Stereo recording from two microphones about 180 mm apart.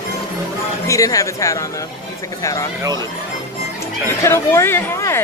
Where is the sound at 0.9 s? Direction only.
20° left (ahead or behind).